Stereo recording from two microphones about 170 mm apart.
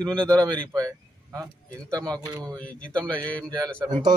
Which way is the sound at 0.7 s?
20° right (ahead or behind).